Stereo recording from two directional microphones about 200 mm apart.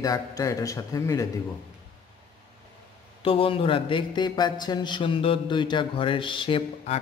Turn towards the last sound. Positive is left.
turn(degrees=25)  # may be behind; listen again after turning